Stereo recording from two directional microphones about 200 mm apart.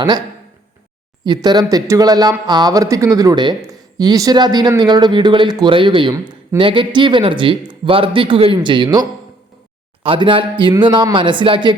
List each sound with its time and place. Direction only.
1.2 s speech: 20° right (ahead or behind)